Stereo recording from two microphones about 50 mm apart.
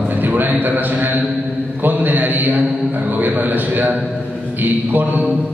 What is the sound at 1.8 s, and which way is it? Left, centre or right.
Mantra, right.